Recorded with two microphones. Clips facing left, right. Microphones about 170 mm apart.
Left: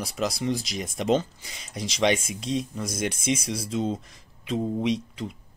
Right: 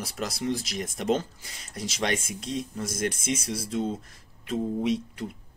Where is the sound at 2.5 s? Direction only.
90° left.